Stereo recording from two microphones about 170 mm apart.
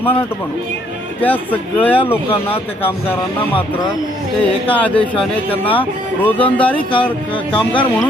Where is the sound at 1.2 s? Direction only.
10° left (ahead or behind).